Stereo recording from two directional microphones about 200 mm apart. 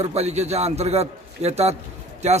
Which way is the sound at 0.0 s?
30° right (ahead or behind).